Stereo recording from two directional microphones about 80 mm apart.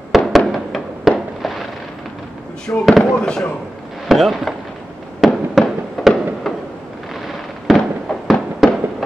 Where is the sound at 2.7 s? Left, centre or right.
Left.